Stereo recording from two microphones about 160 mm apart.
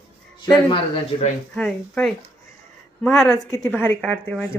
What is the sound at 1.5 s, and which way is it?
A woman's voice, 5° left (ahead or behind).